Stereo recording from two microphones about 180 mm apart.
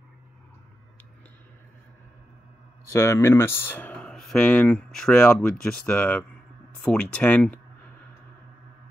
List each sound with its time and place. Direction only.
2.9 s speech: 15° left (ahead or behind)